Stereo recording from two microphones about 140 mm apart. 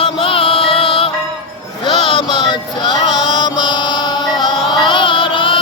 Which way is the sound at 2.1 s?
35° left (ahead or behind).